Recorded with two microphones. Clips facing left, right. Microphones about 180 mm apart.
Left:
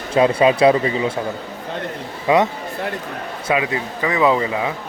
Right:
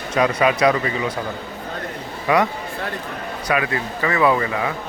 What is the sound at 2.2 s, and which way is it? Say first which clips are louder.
A man's voice: left 2 dB; 20° left (ahead or behind).